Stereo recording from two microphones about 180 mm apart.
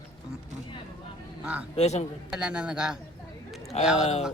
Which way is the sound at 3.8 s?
5° right (ahead or behind).